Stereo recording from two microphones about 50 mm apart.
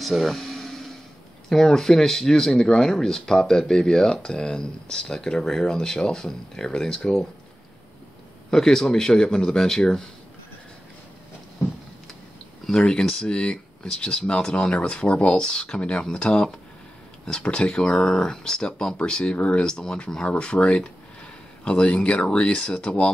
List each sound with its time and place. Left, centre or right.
0.0 s speech: centre
0.4 s a sound: centre
1.5 s speech: centre
8.5 s speech: centre
12.6 s speech: centre
19.3 s speech: left
19.6 s speech: centre